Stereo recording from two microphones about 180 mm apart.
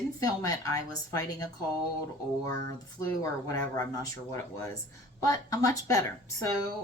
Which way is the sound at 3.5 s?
20° left (ahead or behind).